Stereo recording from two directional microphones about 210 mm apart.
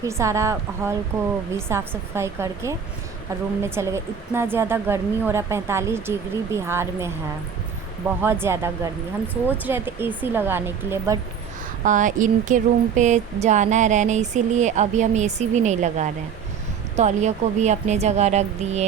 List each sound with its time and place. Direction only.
0.0 s a woman's voice: 15° right (ahead or behind)
8.2 s a woman's voice: 10° right (ahead or behind)
11.9 s speech: 35° right (ahead or behind)